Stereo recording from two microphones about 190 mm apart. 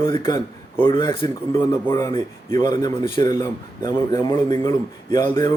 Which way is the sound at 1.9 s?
15° left (ahead or behind).